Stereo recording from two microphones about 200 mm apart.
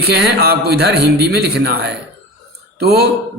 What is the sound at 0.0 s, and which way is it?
A man's voice, 50° right (ahead or behind).